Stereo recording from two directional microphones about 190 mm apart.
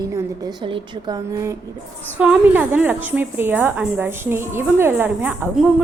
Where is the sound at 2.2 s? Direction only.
5° right (ahead or behind).